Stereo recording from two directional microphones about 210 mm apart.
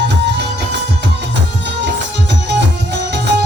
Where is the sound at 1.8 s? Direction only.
55° right (ahead or behind).